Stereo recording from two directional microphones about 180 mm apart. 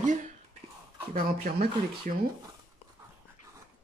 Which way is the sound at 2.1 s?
50° right (ahead or behind).